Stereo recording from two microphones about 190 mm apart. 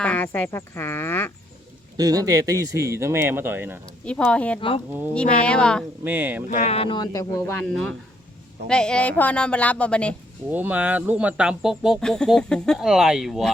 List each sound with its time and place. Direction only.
0.0 s a woman's voice: 5° left (ahead or behind)
2.0 s speech: 20° right (ahead or behind)
4.0 s a woman's voice: 5° left (ahead or behind)
6.1 s speech: 10° right (ahead or behind)
6.6 s speech: 35° left (ahead or behind); by 7.7 s 15° left (ahead or behind)
8.6 s a woman's voice: 5° left (ahead or behind)
10.5 s speech: 10° right (ahead or behind)